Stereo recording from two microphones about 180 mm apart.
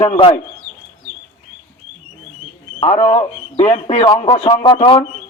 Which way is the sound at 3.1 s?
35° left (ahead or behind).